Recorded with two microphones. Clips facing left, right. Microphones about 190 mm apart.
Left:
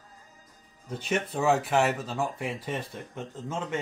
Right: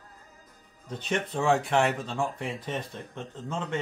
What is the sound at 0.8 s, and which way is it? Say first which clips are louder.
Speech: left 1 dB; 10° left (ahead or behind).